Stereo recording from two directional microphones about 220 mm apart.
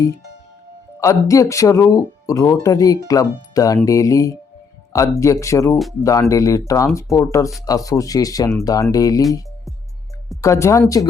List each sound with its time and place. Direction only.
0.9 s speech: 15° left (ahead or behind)
10.4 s speech: 15° left (ahead or behind)